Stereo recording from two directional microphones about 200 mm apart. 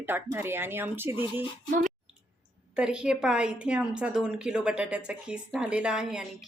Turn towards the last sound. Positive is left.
turn(degrees=-5)  # may be behind; listen again after turning